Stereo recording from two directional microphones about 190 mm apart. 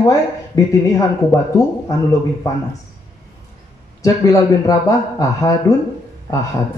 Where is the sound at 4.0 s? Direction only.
15° left (ahead or behind).